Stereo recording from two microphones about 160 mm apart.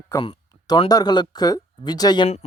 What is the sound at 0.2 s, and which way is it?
Speech, 35° left (ahead or behind).